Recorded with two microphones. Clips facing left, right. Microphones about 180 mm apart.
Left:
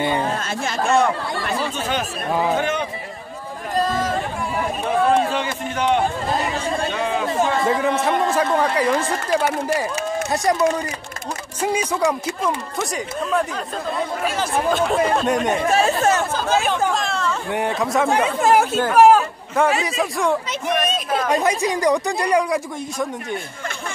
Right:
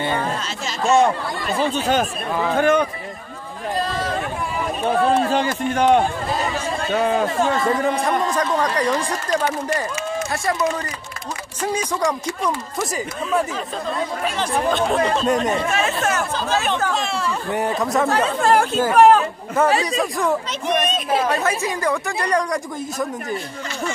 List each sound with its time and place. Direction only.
0.4 s speech: 55° left (ahead or behind)
2.5 s a man's voice: 50° right (ahead or behind)
3.7 s chatter: 45° left (ahead or behind)
5.3 s a man's voice: 40° right (ahead or behind)
7.6 s speech: centre (ahead or behind)
15.7 s speech: 30° left (ahead or behind)
16.9 s speech: 5° right (ahead or behind)
18.0 s a man's voice: 15° left (ahead or behind)
21.3 s speech: 15° left (ahead or behind)